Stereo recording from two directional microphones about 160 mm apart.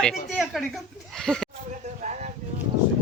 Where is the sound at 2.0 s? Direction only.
50° right (ahead or behind).